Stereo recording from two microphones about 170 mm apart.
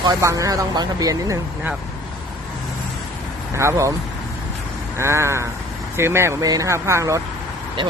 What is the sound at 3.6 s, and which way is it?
Speech, 15° right (ahead or behind).